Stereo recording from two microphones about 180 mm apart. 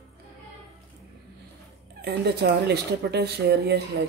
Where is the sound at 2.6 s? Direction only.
65° right (ahead or behind).